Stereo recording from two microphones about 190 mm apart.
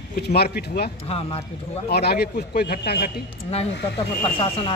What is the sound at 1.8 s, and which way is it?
Speech, 55° left (ahead or behind).